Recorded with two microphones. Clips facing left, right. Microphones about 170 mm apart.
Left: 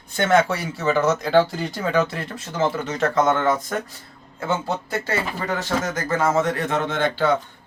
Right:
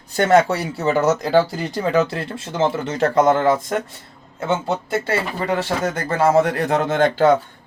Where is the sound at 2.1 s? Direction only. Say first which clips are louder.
Right 3 dB; 30° right (ahead or behind).